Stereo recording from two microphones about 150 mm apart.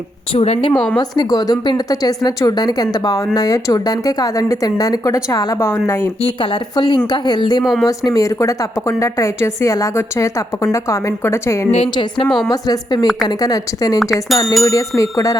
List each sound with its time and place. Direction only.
0.3 s a woman's voice: 40° left (ahead or behind)
0.9 s speech: 25° left (ahead or behind)
6.2 s a woman's voice: 35° left (ahead or behind)
7.6 s speech: centre (ahead or behind)
7.9 s speech: 25° left (ahead or behind)
11.7 s a woman's voice: 35° left (ahead or behind)
14.0 s speech: centre (ahead or behind)
14.6 s speech: 25° left (ahead or behind)